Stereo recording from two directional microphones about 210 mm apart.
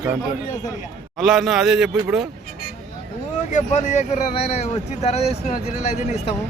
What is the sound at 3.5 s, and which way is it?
Speech, 35° left (ahead or behind).